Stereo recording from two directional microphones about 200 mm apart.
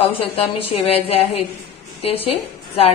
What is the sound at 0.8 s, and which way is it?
A woman's voice, 30° left (ahead or behind).